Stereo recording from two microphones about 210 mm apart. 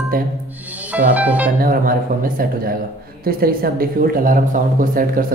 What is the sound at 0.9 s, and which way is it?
Music, 5° right (ahead or behind).